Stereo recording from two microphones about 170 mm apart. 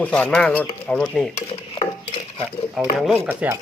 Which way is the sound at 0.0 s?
10° left (ahead or behind).